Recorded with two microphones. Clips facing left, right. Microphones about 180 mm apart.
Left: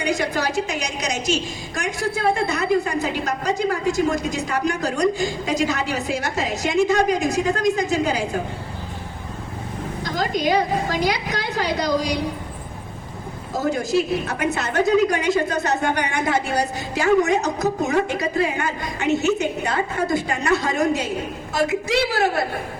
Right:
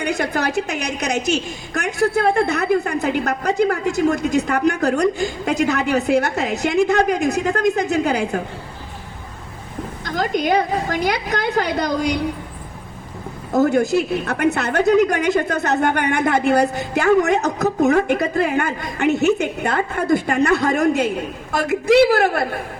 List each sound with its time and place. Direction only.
0.0 s a woman's voice: 55° right (ahead or behind)
10.0 s a woman's voice: 55° right (ahead or behind)
13.5 s a woman's voice: 60° right (ahead or behind)